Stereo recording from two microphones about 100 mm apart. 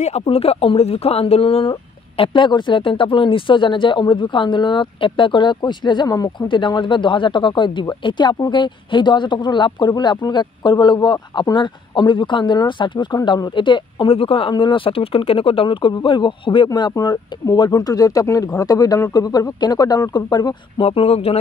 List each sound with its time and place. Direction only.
0.0 s speech: 80° left; by 6.3 s 40° left (ahead or behind)
6.5 s speech: 50° left (ahead or behind)
14.5 s speech: 55° left (ahead or behind)
20.8 s speech: 75° left (ahead or behind)